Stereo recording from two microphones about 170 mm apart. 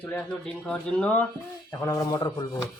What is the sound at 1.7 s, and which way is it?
Speech, 15° left (ahead or behind).